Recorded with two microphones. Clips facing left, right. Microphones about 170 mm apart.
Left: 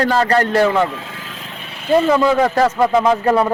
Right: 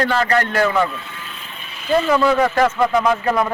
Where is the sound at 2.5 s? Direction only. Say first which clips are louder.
Left 2 dB; 35° left (ahead or behind).